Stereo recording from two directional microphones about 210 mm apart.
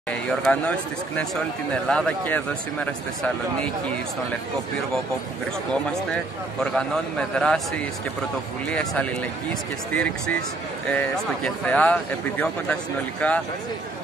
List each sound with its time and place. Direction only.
0.1 s speech: 5° left (ahead or behind)
5.7 s speech: 5° left (ahead or behind)